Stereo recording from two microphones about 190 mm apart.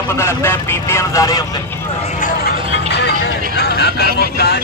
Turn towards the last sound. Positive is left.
turn(degrees=55)  # may be behind; listen again after turning